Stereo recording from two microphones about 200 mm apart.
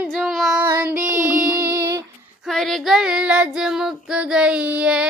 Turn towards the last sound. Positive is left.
turn(degrees=-5)  # may be behind; listen again after turning